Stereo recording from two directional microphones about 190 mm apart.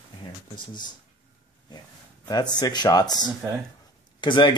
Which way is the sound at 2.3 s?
20° left (ahead or behind).